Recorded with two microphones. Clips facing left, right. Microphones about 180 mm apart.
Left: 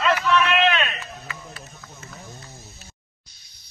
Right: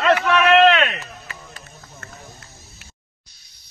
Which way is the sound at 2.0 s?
70° right (ahead or behind).